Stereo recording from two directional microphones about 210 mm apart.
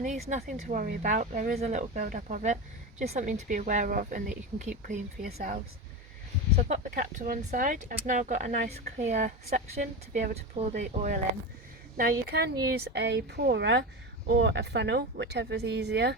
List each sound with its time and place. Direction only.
0.3 s speech: 35° right (ahead or behind)
6.6 s speech: 35° right (ahead or behind)
11.9 s speech: 45° right (ahead or behind)